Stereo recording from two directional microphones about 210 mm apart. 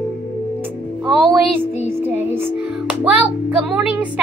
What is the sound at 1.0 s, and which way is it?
Music, 5° right (ahead or behind).